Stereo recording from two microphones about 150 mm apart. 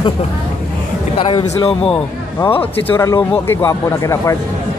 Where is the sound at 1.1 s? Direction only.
30° left (ahead or behind).